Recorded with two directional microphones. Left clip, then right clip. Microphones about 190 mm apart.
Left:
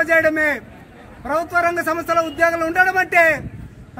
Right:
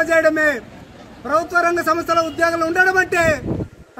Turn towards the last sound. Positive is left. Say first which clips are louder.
# left 1 dB
turn(degrees=10)  # may be behind; listen again after turning